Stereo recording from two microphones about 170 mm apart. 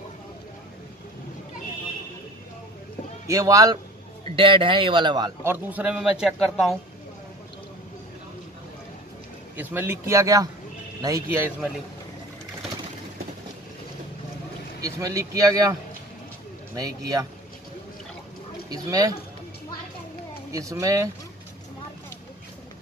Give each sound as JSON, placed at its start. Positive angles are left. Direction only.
{"t": 3.3, "sound": "speech", "side_deg": -20}
{"t": 5.5, "sound": "a man's voice", "side_deg": -10}
{"t": 9.6, "sound": "speech", "side_deg": -10}
{"t": 14.8, "sound": "speech", "side_deg": -20}
{"t": 16.7, "sound": "speech", "side_deg": -20}
{"t": 18.7, "sound": "speech", "side_deg": -20}
{"t": 20.5, "sound": "speech", "side_deg": -20}